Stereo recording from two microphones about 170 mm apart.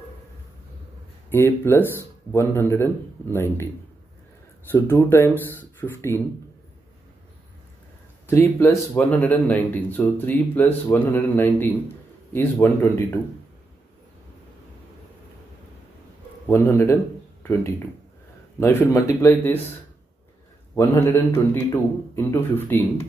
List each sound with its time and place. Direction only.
1.3 s speech: 15° left (ahead or behind)
4.6 s speech: 15° left (ahead or behind)
8.3 s speech: 15° left (ahead or behind)
16.4 s speech: 15° left (ahead or behind)
20.7 s speech: 15° left (ahead or behind)